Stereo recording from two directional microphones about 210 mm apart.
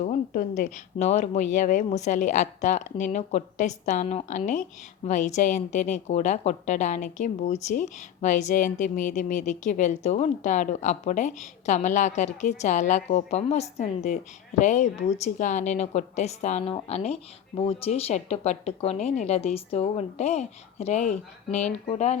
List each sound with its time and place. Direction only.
0.0 s a woman's voice: 35° left (ahead or behind)